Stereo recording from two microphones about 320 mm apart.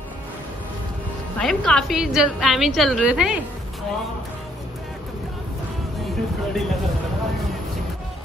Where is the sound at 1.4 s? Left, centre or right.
Centre.